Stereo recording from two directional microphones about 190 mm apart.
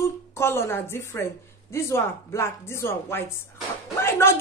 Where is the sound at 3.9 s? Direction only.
15° left (ahead or behind).